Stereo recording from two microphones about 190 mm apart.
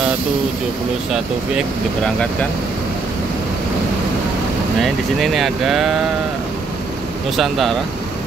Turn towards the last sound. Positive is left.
turn(degrees=0)  # may be behind; listen again after turning